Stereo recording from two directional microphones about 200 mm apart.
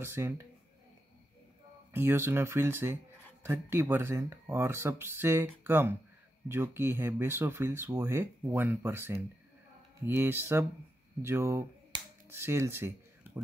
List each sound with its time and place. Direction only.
0.0 s speech: 10° right (ahead or behind)
1.9 s speech: 10° right (ahead or behind)
11.2 s finger snapping: 15° right (ahead or behind)